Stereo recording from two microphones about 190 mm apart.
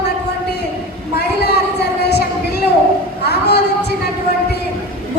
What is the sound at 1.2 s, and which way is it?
Speech, 60° left (ahead or behind).